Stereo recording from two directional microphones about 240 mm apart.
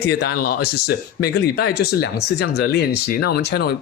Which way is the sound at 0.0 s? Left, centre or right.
Left.